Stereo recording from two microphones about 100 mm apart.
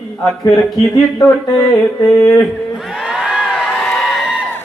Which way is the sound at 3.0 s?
5° right (ahead or behind).